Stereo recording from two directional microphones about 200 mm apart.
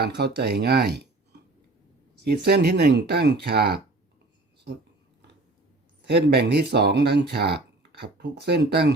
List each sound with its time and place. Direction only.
0.0 s speech: 55° right (ahead or behind)
6.1 s speech: 55° right (ahead or behind)